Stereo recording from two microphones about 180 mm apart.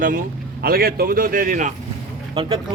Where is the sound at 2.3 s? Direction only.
30° right (ahead or behind).